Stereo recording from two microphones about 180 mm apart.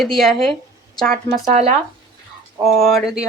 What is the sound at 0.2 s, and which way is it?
Speech, centre (ahead or behind).